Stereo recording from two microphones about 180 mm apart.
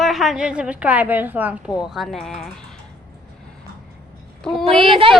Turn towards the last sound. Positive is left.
turn(degrees=-30)  # may be behind; listen again after turning